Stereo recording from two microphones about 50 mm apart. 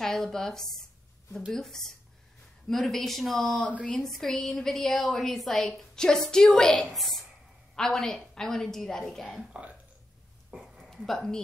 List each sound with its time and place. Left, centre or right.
0.0 s a woman's voice: centre
6.8 s a woman's voice: centre
9.5 s speech: right
10.5 s a sound: centre
10.9 s speech: centre